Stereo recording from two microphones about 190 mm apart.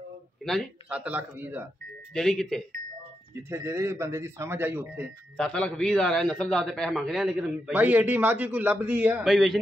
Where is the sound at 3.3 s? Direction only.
15° right (ahead or behind).